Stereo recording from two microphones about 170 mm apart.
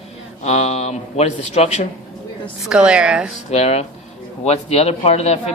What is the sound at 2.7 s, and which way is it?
Speech, 5° right (ahead or behind).